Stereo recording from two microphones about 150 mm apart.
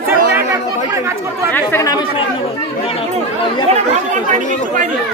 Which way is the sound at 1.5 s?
20° left (ahead or behind).